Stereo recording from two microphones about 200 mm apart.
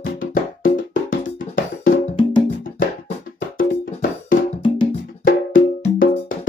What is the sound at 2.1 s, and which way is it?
Music, 25° left (ahead or behind).